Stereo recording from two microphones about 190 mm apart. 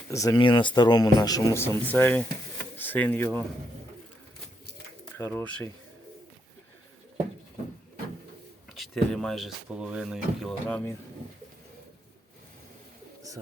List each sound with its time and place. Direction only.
0.1 s speech: 15° left (ahead or behind)
5.1 s speech: 10° left (ahead or behind)
8.7 s speech: centre (ahead or behind)